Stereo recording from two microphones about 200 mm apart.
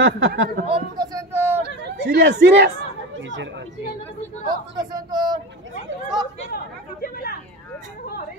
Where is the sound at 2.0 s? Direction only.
60° right (ahead or behind).